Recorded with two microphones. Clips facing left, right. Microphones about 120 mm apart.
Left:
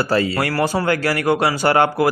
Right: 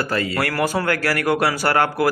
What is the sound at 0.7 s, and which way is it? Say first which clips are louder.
Speech: left 2 dB; 15° left (ahead or behind).